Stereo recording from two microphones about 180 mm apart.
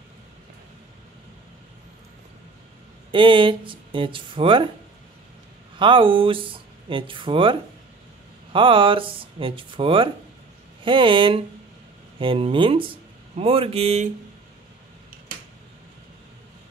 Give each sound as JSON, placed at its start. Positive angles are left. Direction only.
{"t": 3.1, "sound": "speech", "side_deg": -30}
{"t": 5.8, "sound": "speech", "side_deg": -30}
{"t": 8.5, "sound": "speech", "side_deg": -30}